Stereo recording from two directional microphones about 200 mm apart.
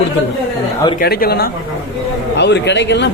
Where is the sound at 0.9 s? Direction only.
50° left (ahead or behind).